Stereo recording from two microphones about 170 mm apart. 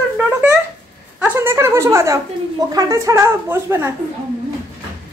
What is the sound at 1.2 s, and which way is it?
A woman's voice, 10° right (ahead or behind).